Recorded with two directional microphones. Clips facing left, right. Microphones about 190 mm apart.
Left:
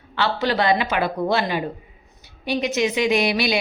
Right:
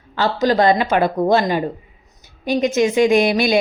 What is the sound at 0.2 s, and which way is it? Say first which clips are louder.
A woman's voice: right 5 dB; 40° right (ahead or behind).